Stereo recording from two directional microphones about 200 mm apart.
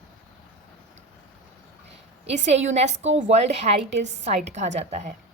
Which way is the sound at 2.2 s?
35° right (ahead or behind).